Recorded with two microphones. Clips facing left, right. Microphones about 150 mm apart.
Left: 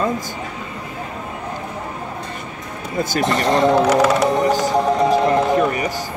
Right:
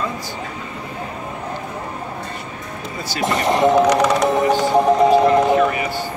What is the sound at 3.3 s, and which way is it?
Speech, 15° right (ahead or behind).